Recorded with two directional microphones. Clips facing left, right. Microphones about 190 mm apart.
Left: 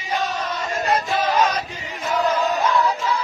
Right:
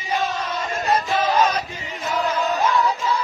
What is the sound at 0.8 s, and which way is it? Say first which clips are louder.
Chant: even; centre (ahead or behind).